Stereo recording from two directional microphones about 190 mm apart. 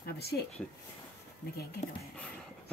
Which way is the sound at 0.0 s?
55° left (ahead or behind).